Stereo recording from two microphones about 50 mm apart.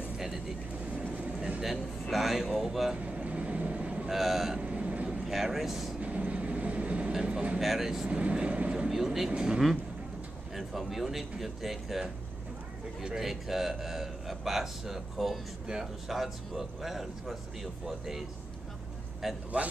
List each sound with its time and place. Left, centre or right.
1.6 s a man's voice: centre
3.0 s vehicle: right
4.1 s a man's voice: centre
4.6 s vehicle: right
5.2 s speech: centre
5.9 s vehicle: right
7.6 s speech: centre
8.1 s speech: right
8.8 s vehicle: centre
9.3 s speech: centre
10.5 s a man's voice: centre
19.2 s a man's voice: centre